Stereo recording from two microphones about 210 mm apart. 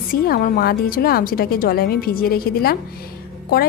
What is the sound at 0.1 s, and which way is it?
A woman's voice, 45° left (ahead or behind).